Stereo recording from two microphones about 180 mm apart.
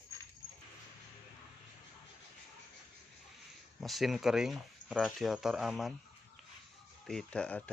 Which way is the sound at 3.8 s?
Centre (ahead or behind).